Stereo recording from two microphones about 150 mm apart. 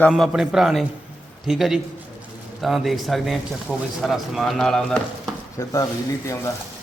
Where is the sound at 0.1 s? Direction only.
Centre (ahead or behind).